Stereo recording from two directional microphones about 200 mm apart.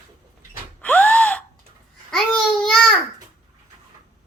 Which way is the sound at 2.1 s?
Centre (ahead or behind).